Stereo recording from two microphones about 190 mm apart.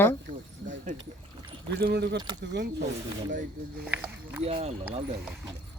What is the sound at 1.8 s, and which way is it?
Speech, 60° right (ahead or behind).